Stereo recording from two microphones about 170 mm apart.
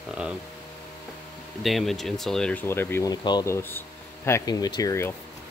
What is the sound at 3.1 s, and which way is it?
Speech, 25° left (ahead or behind).